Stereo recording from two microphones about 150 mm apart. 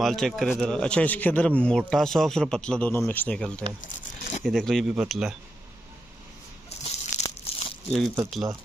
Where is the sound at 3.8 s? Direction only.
60° left (ahead or behind).